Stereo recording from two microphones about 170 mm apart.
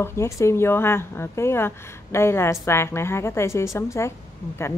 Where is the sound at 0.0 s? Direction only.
15° left (ahead or behind).